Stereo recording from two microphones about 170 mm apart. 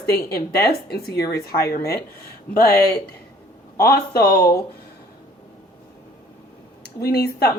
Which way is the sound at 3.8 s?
65° left (ahead or behind).